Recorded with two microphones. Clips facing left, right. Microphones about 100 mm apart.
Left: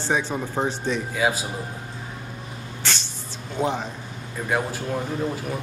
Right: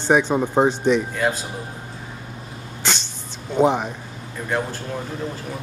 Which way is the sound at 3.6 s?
15° right (ahead or behind).